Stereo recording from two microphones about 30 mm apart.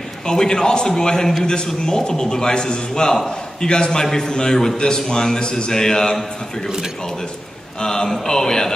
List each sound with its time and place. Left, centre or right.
0.3 s a man's voice: left
7.8 s a man's voice: left